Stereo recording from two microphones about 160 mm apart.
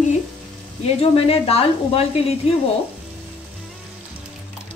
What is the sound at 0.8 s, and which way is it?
Speech, 40° left (ahead or behind).